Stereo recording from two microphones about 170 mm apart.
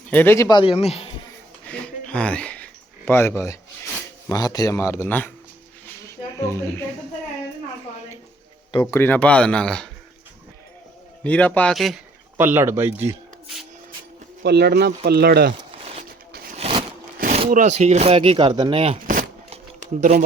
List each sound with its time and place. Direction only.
0.1 s speech: 10° left (ahead or behind); by 1.1 s 35° left (ahead or behind)
1.6 s a sound: 5° left (ahead or behind)
3.1 s speech: 15° left (ahead or behind)
6.4 s speech: 15° left (ahead or behind)
8.8 s speech: 15° left (ahead or behind)
11.2 s speech: 10° left (ahead or behind)
12.4 s speech: 10° right (ahead or behind)
14.4 s speech: 75° right (ahead or behind)
16.6 s a sound: 35° right (ahead or behind)
17.5 s speech: 45° right (ahead or behind)
19.5 s a sound: 45° right (ahead or behind)